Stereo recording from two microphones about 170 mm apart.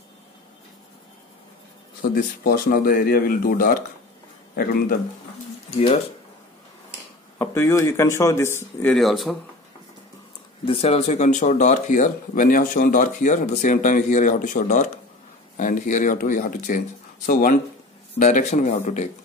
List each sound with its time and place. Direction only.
2.1 s speech: 55° left (ahead or behind)
7.3 s speech: 15° left (ahead or behind)
8.9 s speech: centre (ahead or behind)
10.6 s speech: 35° left (ahead or behind)